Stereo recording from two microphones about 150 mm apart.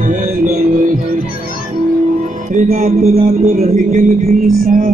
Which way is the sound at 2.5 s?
60° right (ahead or behind).